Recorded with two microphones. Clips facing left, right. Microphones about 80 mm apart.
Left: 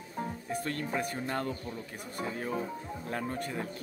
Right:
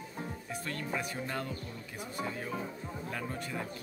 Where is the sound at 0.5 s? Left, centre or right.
Left.